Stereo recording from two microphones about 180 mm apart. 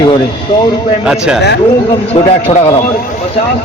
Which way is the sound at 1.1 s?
5° right (ahead or behind).